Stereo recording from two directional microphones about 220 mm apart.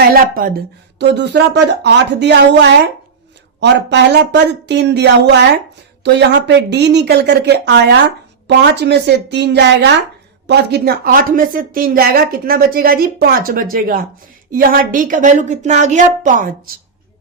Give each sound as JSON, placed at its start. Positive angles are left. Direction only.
{"t": 0.1, "sound": "a woman's voice", "side_deg": -40}